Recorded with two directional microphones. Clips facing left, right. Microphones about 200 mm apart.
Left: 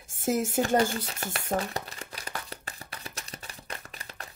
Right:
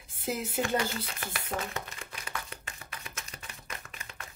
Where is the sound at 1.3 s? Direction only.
45° left (ahead or behind).